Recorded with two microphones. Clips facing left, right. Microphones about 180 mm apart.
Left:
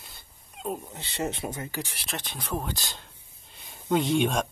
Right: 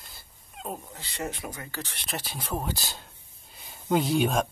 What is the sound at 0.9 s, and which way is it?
Speech, 25° left (ahead or behind).